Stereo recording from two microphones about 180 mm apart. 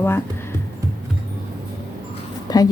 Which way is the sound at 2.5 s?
20° left (ahead or behind).